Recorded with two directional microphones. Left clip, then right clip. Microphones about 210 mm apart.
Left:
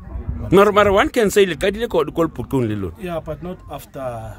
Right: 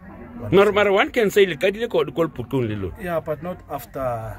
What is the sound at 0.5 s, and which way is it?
Speech, 25° left (ahead or behind).